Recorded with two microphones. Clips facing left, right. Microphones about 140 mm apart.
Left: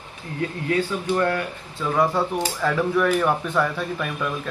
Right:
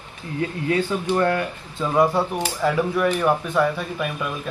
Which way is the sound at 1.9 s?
10° right (ahead or behind).